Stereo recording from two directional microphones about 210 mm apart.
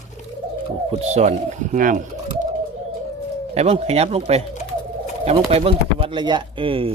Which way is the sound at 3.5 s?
30° right (ahead or behind).